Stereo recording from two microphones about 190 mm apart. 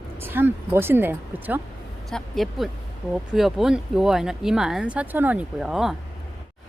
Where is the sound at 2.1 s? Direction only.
Centre (ahead or behind).